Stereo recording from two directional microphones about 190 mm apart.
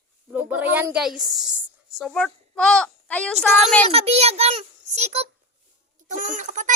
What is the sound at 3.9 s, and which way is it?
A child's voice, 30° right (ahead or behind).